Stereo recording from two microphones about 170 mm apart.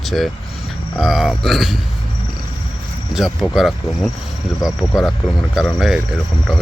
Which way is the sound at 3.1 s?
Centre (ahead or behind).